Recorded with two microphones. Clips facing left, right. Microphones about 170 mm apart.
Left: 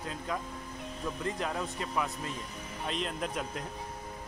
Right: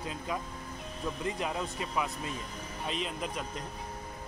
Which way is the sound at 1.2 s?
10° right (ahead or behind).